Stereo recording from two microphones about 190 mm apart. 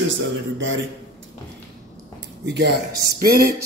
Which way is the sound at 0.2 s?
90° right.